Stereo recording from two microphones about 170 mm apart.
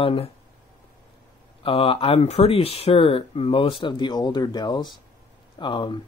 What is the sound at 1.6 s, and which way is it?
Speech, 35° left (ahead or behind).